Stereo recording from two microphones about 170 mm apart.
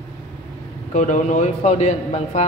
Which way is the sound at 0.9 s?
50° left (ahead or behind).